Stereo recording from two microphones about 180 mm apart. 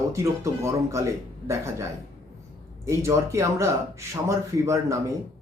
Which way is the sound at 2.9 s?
15° right (ahead or behind).